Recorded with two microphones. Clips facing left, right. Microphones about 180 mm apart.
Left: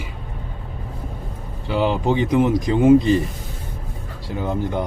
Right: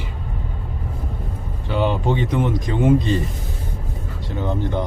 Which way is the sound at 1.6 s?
10° left (ahead or behind).